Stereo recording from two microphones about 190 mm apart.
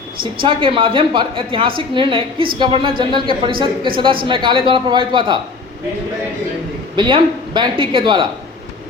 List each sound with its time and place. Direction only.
0.2 s a woman's voice: 25° right (ahead or behind)
6.9 s a woman's voice: 25° right (ahead or behind)